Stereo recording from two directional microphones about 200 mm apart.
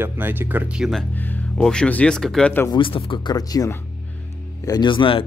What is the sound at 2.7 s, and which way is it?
Speech, 25° left (ahead or behind).